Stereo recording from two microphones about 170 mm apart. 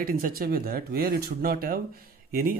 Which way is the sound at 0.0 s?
60° right (ahead or behind).